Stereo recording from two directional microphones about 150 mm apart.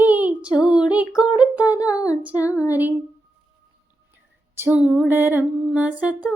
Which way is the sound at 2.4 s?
20° left (ahead or behind).